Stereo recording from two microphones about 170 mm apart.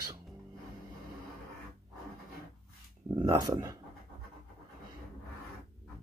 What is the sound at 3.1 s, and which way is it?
Speech, 25° right (ahead or behind).